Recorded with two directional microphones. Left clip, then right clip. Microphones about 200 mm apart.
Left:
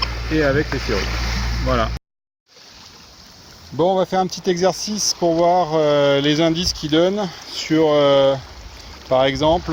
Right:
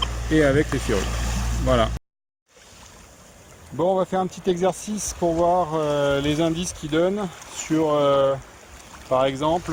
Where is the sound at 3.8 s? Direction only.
30° left (ahead or behind).